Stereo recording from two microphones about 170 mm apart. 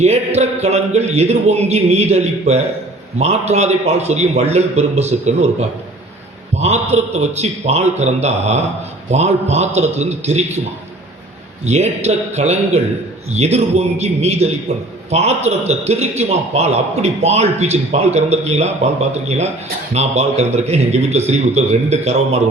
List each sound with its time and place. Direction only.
0.0 s a man's voice: 40° right (ahead or behind)
11.6 s a man's voice: 40° right (ahead or behind)